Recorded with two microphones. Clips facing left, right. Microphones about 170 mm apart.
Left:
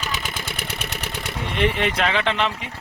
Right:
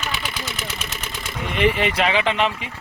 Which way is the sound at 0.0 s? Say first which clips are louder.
Right 1 dB; 45° left (ahead or behind).